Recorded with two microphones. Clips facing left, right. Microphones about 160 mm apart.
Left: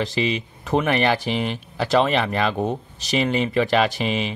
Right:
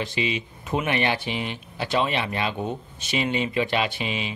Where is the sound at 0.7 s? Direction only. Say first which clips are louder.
Left 5 dB; 40° left (ahead or behind).